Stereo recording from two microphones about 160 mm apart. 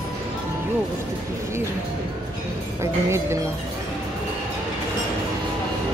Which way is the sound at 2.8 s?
15° right (ahead or behind).